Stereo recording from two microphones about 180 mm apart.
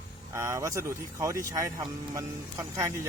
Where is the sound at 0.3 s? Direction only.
15° right (ahead or behind).